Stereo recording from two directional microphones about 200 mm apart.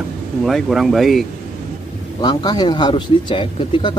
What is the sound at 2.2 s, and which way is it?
Speech, 20° left (ahead or behind).